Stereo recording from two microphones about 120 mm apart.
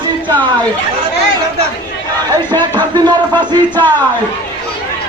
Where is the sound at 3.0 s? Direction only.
40° right (ahead or behind).